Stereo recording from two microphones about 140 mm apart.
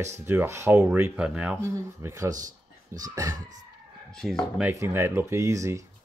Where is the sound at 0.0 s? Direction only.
20° right (ahead or behind).